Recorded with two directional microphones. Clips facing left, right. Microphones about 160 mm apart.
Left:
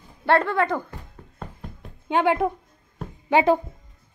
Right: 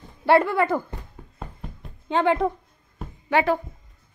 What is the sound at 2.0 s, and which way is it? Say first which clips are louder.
A woman's voice: even; 10° left (ahead or behind).